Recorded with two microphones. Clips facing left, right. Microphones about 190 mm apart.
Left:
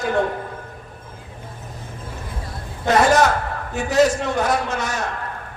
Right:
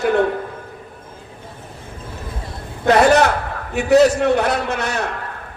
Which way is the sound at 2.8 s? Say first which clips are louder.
Right 3 dB; 60° right (ahead or behind).